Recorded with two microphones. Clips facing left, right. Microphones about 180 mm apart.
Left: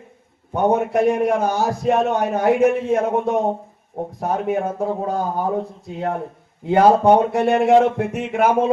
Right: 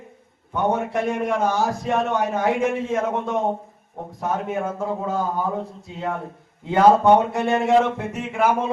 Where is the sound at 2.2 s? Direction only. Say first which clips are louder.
Left 3 dB; 60° left (ahead or behind).